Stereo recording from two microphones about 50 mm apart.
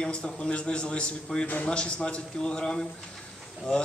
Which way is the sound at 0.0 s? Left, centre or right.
Centre.